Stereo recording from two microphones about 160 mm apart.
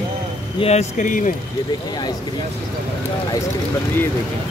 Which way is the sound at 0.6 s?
40° left (ahead or behind).